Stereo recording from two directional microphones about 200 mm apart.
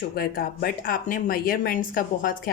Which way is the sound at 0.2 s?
45° left (ahead or behind).